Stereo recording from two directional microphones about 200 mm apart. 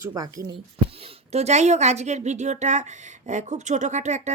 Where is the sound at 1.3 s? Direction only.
35° right (ahead or behind).